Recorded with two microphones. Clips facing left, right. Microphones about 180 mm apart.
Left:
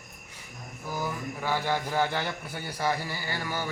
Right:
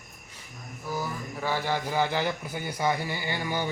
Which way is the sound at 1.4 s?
10° right (ahead or behind).